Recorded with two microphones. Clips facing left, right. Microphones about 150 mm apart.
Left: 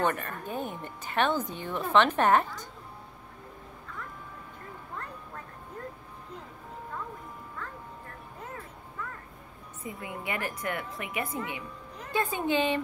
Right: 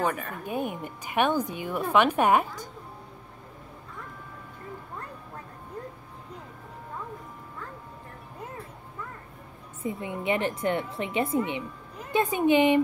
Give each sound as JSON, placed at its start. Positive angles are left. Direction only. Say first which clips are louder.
{"t": 0.0, "sound": "a woman's voice", "louder": "even", "side_deg": -5}
{"t": 9.8, "sound": "a woman's voice", "louder": "right 8 dB", "side_deg": -25}